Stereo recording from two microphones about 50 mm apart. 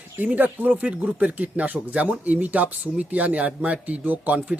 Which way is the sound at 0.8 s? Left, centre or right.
Right.